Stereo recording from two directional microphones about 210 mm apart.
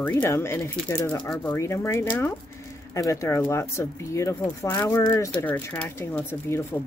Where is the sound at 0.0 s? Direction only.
10° left (ahead or behind).